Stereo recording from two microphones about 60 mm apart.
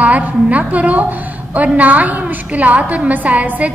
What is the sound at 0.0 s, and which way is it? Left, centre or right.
A woman's voice, right.